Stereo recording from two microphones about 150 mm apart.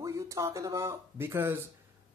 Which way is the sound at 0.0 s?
20° right (ahead or behind).